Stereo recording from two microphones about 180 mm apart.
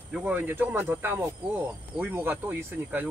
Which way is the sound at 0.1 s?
10° right (ahead or behind).